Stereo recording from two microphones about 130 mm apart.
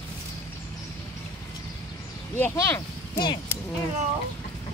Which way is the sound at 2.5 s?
20° left (ahead or behind).